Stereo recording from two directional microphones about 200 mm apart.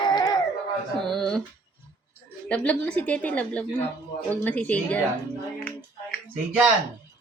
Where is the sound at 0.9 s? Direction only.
Centre (ahead or behind).